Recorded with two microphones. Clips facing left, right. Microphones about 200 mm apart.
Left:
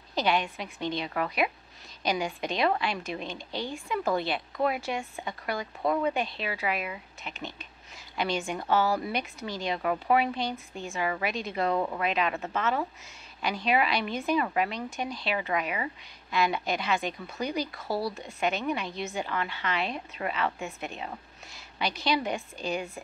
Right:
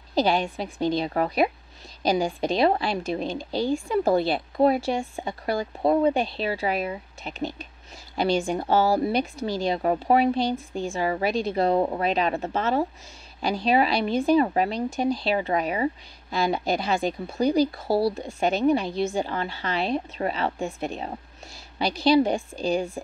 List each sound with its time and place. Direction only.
0.1 s speech: 35° right (ahead or behind)